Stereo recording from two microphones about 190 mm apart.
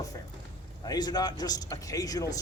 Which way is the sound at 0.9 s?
20° left (ahead or behind).